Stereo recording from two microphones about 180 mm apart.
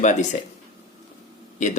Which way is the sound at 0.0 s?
40° left (ahead or behind).